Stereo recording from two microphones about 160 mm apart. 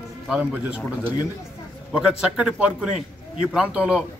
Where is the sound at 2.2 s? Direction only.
5° right (ahead or behind).